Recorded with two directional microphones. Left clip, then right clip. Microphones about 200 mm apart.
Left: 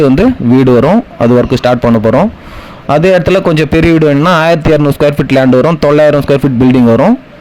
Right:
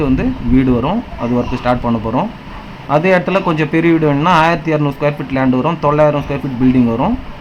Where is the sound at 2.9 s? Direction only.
45° left (ahead or behind).